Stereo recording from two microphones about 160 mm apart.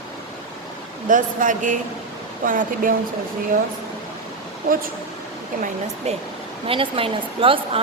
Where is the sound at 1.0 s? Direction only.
55° right (ahead or behind).